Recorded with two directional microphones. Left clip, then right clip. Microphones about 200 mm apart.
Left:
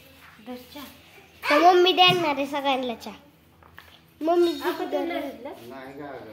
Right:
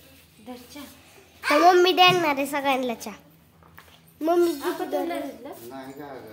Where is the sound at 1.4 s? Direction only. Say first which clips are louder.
Even; 10° right (ahead or behind).